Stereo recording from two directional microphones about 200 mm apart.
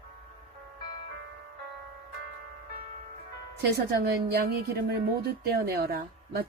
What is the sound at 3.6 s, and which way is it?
Music, 55° right (ahead or behind).